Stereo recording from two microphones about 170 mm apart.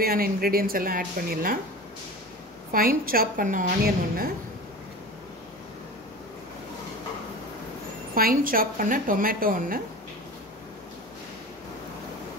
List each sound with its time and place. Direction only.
0.0 s a woman's voice: 60° right (ahead or behind)
2.7 s a woman's voice: 55° right (ahead or behind)
8.1 s a woman's voice: 60° right (ahead or behind)